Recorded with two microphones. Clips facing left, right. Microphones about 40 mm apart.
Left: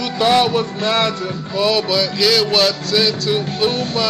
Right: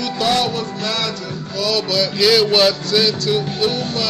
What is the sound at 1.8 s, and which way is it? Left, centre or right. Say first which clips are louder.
Music: left 1 dB; centre.